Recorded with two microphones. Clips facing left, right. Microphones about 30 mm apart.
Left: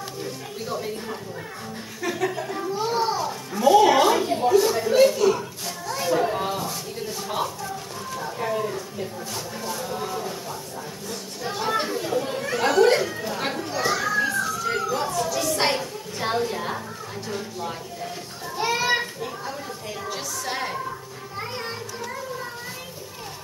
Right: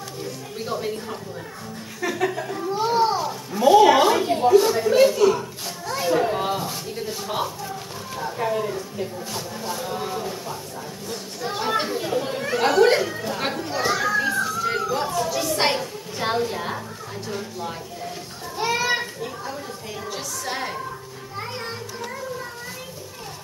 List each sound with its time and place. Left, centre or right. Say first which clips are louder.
0.6 s speech: right 3 dB; centre
2.0 s speech: right 2 dB; centre
2.9 s children playing: right 5 dB; centre
3.2 s a sound: right 2 dB; centre
11.1 s chatter: right 2 dB; centre
17.3 s a sound: even; centre
18.6 s children playing: even; centre
20.1 s a sound: even; centre
21.4 s music: even; centre